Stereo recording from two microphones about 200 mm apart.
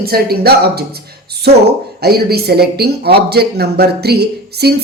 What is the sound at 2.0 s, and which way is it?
A woman's voice, 50° right (ahead or behind).